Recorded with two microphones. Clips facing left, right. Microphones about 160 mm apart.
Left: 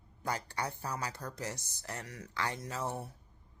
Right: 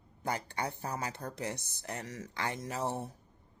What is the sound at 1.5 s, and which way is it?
Speech, 60° right (ahead or behind).